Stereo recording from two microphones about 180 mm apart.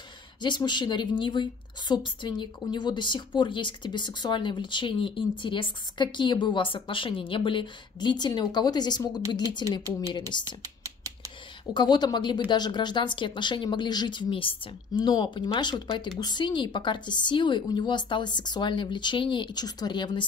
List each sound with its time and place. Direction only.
0.4 s a woman's voice: 25° left (ahead or behind)
9.7 s a woman's voice: 20° right (ahead or behind)
10.6 s computer keyboard: 20° right (ahead or behind)
11.7 s a woman's voice: 25° left (ahead or behind)